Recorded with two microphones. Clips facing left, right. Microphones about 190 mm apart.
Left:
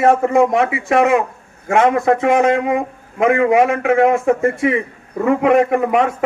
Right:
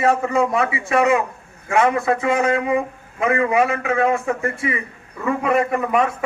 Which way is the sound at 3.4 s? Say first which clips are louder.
Left 5 dB; 55° left (ahead or behind).